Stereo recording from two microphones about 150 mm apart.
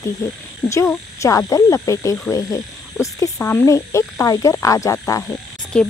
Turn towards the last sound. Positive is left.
turn(degrees=5)  # may be behind; listen again after turning